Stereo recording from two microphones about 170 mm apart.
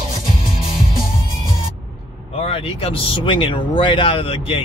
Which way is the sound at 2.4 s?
35° left (ahead or behind).